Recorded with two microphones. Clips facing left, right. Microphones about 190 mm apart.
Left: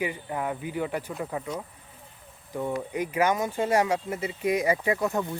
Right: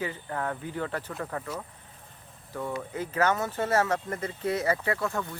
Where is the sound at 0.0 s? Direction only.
15° left (ahead or behind).